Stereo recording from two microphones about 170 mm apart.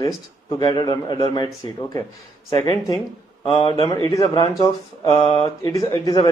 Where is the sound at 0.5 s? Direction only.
25° left (ahead or behind).